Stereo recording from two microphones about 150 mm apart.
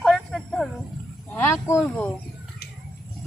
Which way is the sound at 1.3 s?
15° left (ahead or behind).